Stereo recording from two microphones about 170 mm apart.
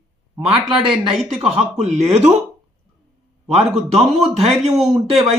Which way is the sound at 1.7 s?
40° right (ahead or behind).